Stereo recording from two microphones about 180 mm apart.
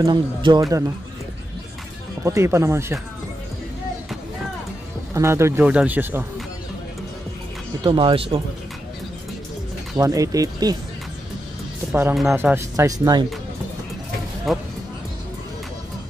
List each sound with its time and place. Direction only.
0.0 s speech: 25° right (ahead or behind)
2.2 s speech: 15° right (ahead or behind)
5.1 s speech: 15° right (ahead or behind)
7.8 s speech: 30° right (ahead or behind)
9.9 s speech: 20° right (ahead or behind)
11.9 s speech: 5° right (ahead or behind)
14.5 s speech: centre (ahead or behind)